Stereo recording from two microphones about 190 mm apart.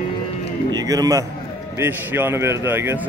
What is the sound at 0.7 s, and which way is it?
A man's voice, 20° right (ahead or behind).